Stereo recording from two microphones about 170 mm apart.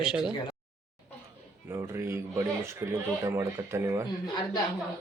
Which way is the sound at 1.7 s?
15° right (ahead or behind).